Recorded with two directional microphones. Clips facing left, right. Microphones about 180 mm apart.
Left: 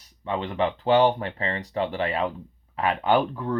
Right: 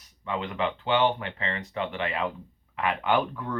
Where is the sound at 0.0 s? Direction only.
30° left (ahead or behind).